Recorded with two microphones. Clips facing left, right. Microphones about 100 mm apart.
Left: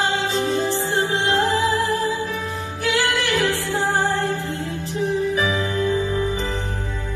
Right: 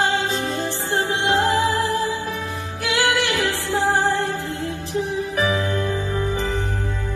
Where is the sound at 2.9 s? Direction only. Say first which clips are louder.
Right 1 dB; 75° right (ahead or behind).